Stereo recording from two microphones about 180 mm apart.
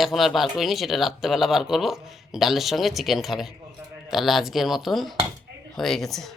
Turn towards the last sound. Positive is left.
turn(degrees=0)  # may be behind; listen again after turning